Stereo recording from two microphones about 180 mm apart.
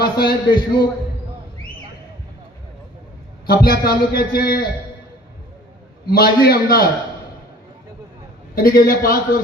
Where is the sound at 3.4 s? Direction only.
60° left (ahead or behind).